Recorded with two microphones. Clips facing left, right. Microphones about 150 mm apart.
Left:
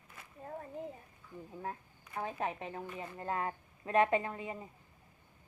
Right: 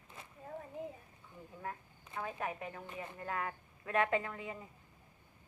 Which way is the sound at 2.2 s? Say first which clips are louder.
Left 3 dB; 25° left (ahead or behind).